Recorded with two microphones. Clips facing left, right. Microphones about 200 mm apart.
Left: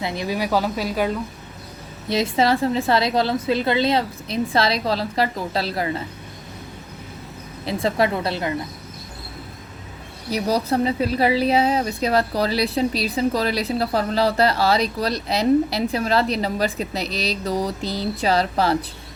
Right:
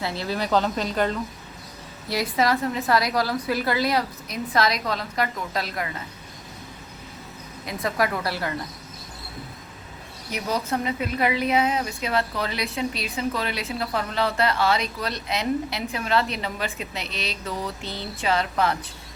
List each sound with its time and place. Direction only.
0.0 s a woman's voice: 15° left (ahead or behind)
2.0 s a woman's voice: 25° left (ahead or behind)
7.6 s a woman's voice: 30° left (ahead or behind)
10.2 s a woman's voice: 35° left (ahead or behind)